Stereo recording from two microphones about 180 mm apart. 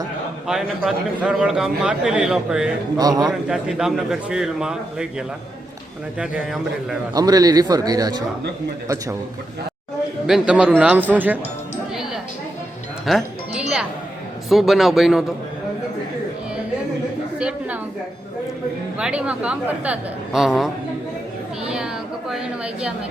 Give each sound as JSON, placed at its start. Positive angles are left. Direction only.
{"t": 0.4, "sound": "a man's voice", "side_deg": -5}
{"t": 3.0, "sound": "a man's voice", "side_deg": -20}
{"t": 3.5, "sound": "a man's voice", "side_deg": -5}
{"t": 6.1, "sound": "a man's voice", "side_deg": -5}
{"t": 7.1, "sound": "a man's voice", "side_deg": -20}
{"t": 10.2, "sound": "a man's voice", "side_deg": -5}
{"t": 13.1, "sound": "music", "side_deg": 0}
{"t": 14.5, "sound": "a man's voice", "side_deg": 0}
{"t": 17.3, "sound": "a sound", "side_deg": -5}
{"t": 18.9, "sound": "a man's voice", "side_deg": -5}
{"t": 21.6, "sound": "a sound", "side_deg": -5}